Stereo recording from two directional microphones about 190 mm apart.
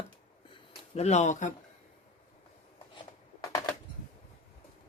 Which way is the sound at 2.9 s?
20° left (ahead or behind).